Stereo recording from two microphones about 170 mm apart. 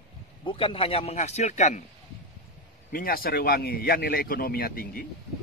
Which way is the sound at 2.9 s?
60° left (ahead or behind).